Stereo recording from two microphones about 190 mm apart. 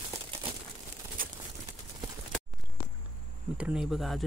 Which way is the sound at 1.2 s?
45° right (ahead or behind).